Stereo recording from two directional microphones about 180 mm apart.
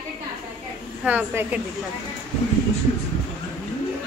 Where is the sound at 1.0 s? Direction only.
5° right (ahead or behind).